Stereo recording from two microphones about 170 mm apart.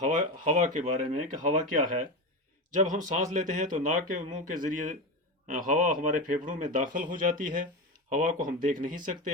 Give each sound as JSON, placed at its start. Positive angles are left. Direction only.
{"t": 0.0, "sound": "speech", "side_deg": -45}